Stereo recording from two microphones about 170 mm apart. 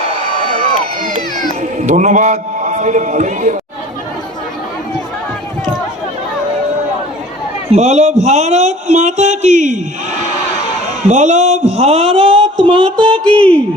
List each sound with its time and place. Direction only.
0.4 s crowd: 45° right (ahead or behind)
1.8 s a man's voice: 45° right (ahead or behind)
7.7 s speech: 40° right (ahead or behind)
11.0 s a man's voice: 45° right (ahead or behind)
12.6 s a sound: 30° right (ahead or behind)
13.1 s a sound: 5° left (ahead or behind)